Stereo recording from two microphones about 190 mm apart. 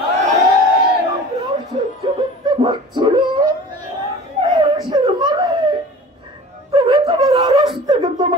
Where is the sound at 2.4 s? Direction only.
25° right (ahead or behind).